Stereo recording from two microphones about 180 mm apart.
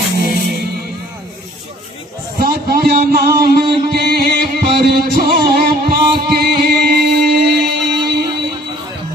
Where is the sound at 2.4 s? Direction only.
60° right (ahead or behind).